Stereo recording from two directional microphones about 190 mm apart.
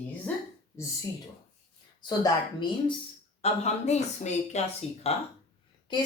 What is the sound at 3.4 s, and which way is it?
Speech, 35° left (ahead or behind).